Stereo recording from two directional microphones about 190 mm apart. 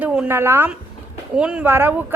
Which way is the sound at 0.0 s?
10° right (ahead or behind).